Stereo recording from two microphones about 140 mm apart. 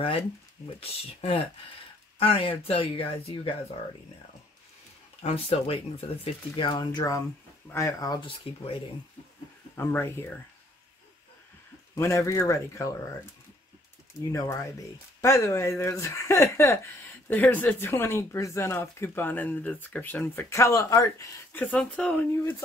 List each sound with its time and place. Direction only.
0.7 s speech: 45° left (ahead or behind)
5.2 s speech: 45° left (ahead or behind)
7.0 s speech: 25° left (ahead or behind)
8.5 s speech: 40° left (ahead or behind)
9.8 s speech: 15° left (ahead or behind)
11.9 s speech: 20° left (ahead or behind)
14.3 s speech: 20° left (ahead or behind)
21.6 s speech: 5° left (ahead or behind)